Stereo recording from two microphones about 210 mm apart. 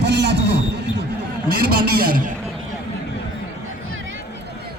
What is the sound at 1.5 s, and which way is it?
Speech, 45° right (ahead or behind).